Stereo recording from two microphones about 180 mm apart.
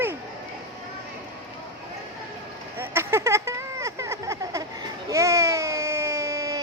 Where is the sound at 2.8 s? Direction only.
15° right (ahead or behind).